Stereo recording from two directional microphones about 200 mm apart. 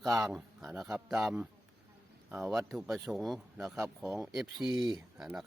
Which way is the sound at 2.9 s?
Centre (ahead or behind).